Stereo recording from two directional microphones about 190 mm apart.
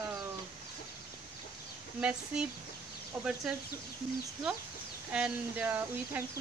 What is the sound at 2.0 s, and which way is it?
Speech, 5° right (ahead or behind).